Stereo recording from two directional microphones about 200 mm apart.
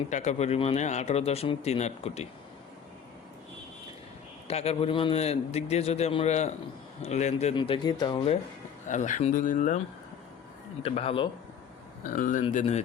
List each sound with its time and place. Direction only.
0.1 s a man's voice: 35° left (ahead or behind)
4.4 s a man's voice: 30° left (ahead or behind)
8.9 s a man's voice: 40° left (ahead or behind)
10.8 s speech: 30° left (ahead or behind)
12.0 s a man's voice: 40° left (ahead or behind)